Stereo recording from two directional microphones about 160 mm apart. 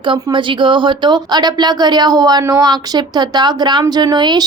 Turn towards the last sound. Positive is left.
turn(degrees=-25)  # may be behind; listen again after turning